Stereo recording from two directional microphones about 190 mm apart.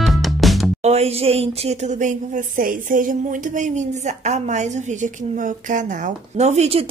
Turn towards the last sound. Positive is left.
turn(degrees=-35)  # may be behind; listen again after turning